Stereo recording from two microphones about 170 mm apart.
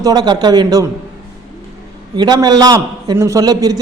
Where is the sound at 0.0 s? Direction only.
25° right (ahead or behind).